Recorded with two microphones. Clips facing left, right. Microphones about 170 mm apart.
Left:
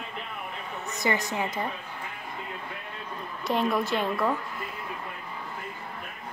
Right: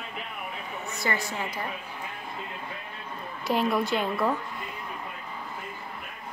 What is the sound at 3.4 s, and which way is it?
Speech, centre (ahead or behind).